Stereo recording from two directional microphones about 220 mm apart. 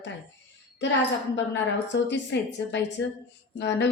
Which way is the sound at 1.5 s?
55° left (ahead or behind).